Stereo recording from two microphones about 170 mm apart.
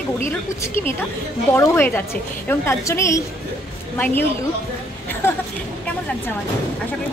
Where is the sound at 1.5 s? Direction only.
15° left (ahead or behind).